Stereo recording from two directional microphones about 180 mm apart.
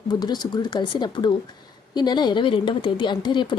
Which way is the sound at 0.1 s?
25° left (ahead or behind).